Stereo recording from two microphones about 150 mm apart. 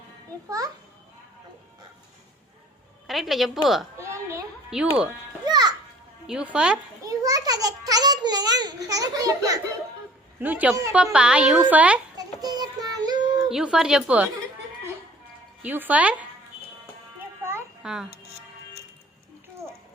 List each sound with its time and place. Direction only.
3.1 s a woman's voice: centre (ahead or behind)
4.0 s a sound: 20° right (ahead or behind)
4.7 s a woman's voice: 5° right (ahead or behind)
5.5 s children playing: 25° right (ahead or behind)
6.2 s a woman's voice: 5° right (ahead or behind)
7.0 s a child's voice: 25° right (ahead or behind)
10.4 s a woman's voice: 10° right (ahead or behind)
12.1 s child singing: 25° right (ahead or behind)
13.5 s a woman's voice: 5° right (ahead or behind)
15.6 s a woman's voice: 10° right (ahead or behind)
17.2 s music: 15° right (ahead or behind)
17.8 s a woman's voice: 5° right (ahead or behind)